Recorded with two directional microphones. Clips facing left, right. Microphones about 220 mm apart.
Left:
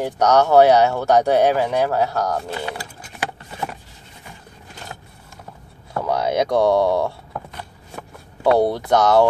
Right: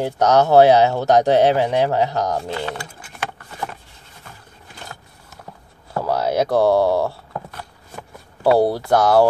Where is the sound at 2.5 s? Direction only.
10° left (ahead or behind).